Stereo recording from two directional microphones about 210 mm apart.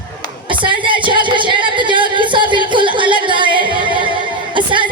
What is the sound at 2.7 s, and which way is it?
Singing, 20° right (ahead or behind).